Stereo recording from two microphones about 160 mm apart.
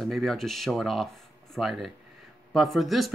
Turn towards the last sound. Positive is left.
turn(degrees=0)  # may be behind; listen again after turning